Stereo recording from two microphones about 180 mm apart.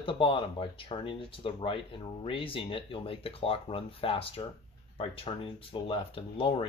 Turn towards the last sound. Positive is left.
turn(degrees=30)  # may be behind; listen again after turning